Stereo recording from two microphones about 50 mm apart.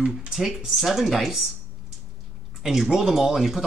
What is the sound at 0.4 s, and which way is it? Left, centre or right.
Speech, centre.